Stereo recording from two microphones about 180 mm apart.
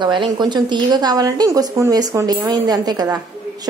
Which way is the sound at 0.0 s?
25° right (ahead or behind).